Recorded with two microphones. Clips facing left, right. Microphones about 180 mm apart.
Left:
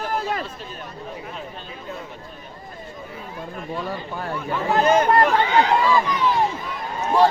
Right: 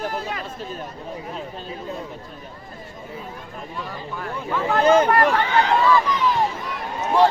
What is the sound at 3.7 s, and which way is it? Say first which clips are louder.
Speech: left 3 dB; 30° left (ahead or behind).